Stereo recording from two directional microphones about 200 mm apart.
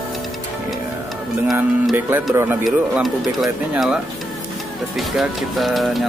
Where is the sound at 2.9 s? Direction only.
Centre (ahead or behind).